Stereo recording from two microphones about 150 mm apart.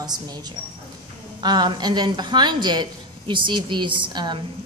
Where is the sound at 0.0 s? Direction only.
25° right (ahead or behind).